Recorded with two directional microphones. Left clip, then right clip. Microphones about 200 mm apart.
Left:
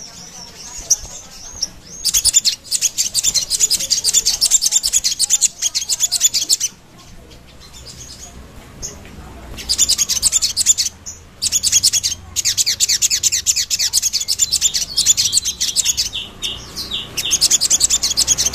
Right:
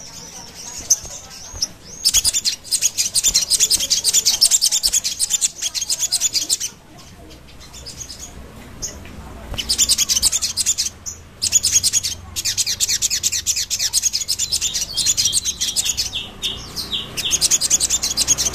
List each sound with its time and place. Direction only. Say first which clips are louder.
1.6 s chirp: right 2 dB; 20° right (ahead or behind)
2.3 s bird: left 4 dB; 10° left (ahead or behind)
3.3 s bird: right 2 dB; 20° right (ahead or behind)
5.0 s bird: left 4 dB; 10° left (ahead or behind)
9.7 s a sound: left 1 dB; 20° right (ahead or behind)
10.4 s a sound: left 4 dB; 10° left (ahead or behind)
11.4 s bird: left 2 dB; 10° left (ahead or behind)